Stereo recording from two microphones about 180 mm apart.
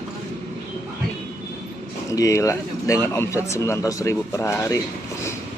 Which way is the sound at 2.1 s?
15° left (ahead or behind).